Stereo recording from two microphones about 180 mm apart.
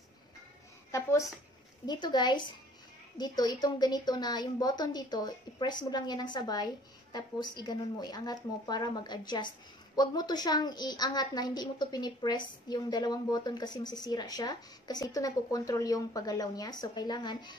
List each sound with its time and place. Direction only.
1.9 s a woman's voice: 25° left (ahead or behind)